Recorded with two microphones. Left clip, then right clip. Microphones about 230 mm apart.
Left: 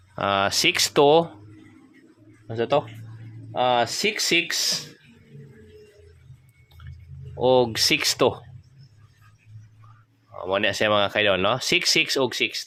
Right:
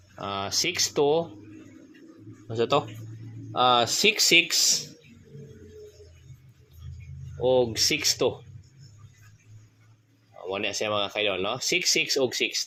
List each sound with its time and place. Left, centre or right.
0.2 s speech: left
2.5 s speech: centre
7.4 s speech: left
10.5 s speech: left